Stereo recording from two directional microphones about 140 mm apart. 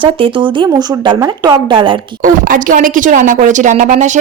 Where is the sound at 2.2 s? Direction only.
75° right (ahead or behind).